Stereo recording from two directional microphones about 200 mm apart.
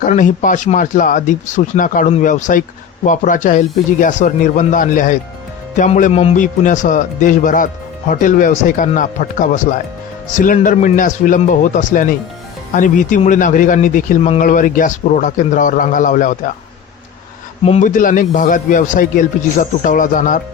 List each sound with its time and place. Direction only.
0.0 s a man's voice: 40° left (ahead or behind)
17.6 s a man's voice: 35° left (ahead or behind)